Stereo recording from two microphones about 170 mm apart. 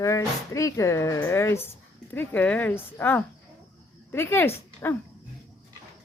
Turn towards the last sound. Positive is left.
turn(degrees=15)  # may be behind; listen again after turning